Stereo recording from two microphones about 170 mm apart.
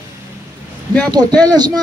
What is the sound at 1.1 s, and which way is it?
Speech, 25° right (ahead or behind).